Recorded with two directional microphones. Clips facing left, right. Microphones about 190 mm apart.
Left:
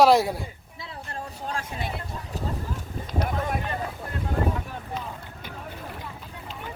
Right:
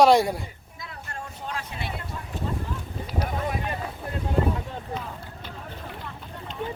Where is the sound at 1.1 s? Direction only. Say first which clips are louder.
Left 2 dB; 40° left (ahead or behind).